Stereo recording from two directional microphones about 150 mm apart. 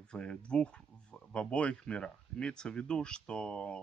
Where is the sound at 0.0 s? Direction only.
5° left (ahead or behind).